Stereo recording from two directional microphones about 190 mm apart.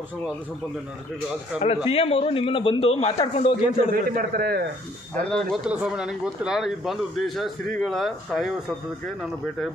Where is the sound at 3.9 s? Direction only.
50° right (ahead or behind).